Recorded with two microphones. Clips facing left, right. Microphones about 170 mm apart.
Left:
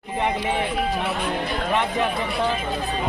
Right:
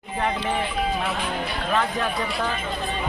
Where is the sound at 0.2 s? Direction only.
15° left (ahead or behind).